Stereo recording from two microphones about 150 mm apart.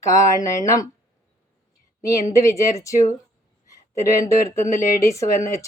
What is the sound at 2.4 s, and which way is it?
Speech, 20° left (ahead or behind).